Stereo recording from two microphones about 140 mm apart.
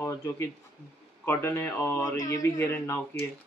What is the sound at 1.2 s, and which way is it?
A man's voice, 15° left (ahead or behind).